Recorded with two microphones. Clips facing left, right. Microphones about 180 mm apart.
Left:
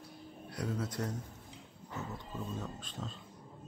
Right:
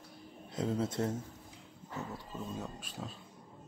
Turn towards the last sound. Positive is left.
turn(degrees=-10)  # may be behind; listen again after turning